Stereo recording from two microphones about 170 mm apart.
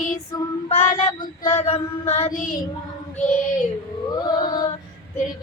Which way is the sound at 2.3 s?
50° left (ahead or behind).